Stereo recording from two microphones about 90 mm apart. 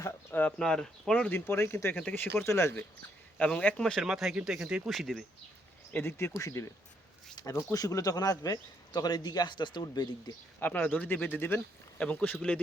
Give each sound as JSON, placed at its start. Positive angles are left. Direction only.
{"t": 0.6, "sound": "speech", "side_deg": 5}
{"t": 1.3, "sound": "speech", "side_deg": 30}
{"t": 3.3, "sound": "speech", "side_deg": 15}
{"t": 4.0, "sound": "speech", "side_deg": -5}
{"t": 5.9, "sound": "a man's voice", "side_deg": 25}
{"t": 10.6, "sound": "speech", "side_deg": 20}